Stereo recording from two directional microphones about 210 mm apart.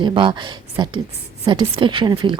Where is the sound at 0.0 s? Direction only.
25° right (ahead or behind).